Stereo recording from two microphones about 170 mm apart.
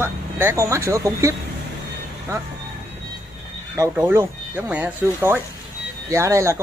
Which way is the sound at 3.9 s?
10° right (ahead or behind).